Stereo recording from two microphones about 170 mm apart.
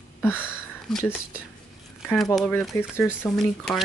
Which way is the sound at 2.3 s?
Centre (ahead or behind).